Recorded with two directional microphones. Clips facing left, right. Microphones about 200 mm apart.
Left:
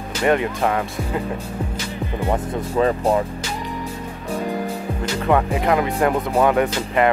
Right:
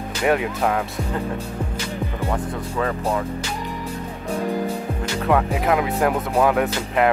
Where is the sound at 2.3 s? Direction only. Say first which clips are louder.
Left 4 dB; 25° left (ahead or behind).